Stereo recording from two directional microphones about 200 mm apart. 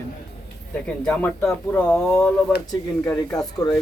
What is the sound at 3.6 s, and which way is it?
Speech, 20° left (ahead or behind).